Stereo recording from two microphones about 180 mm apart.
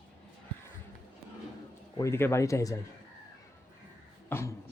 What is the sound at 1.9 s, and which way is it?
Speech, 15° left (ahead or behind).